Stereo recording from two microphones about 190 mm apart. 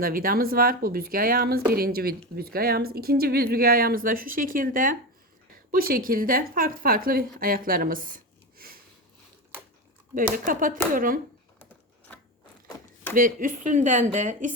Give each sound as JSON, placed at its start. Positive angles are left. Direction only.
{"t": 0.0, "sound": "a woman's voice", "side_deg": -50}
{"t": 10.3, "sound": "a woman's voice", "side_deg": -45}
{"t": 13.1, "sound": "speech", "side_deg": -45}